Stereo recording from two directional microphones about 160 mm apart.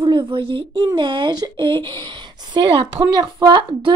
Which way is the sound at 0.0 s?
30° right (ahead or behind).